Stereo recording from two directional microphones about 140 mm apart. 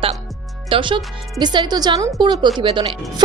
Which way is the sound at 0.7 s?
35° right (ahead or behind).